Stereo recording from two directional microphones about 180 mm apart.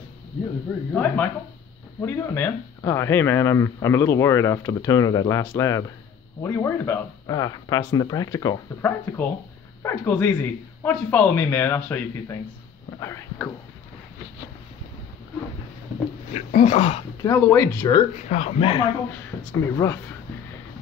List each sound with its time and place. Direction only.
0.9 s speech: 10° left (ahead or behind)
13.0 s speech: 15° left (ahead or behind)
16.3 s speech: 40° left (ahead or behind)
17.2 s speech: 15° left (ahead or behind)
18.3 s speech: 35° left (ahead or behind)
19.5 s speech: 15° left (ahead or behind)